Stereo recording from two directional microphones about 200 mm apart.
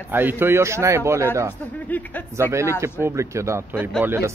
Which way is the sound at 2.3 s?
15° right (ahead or behind).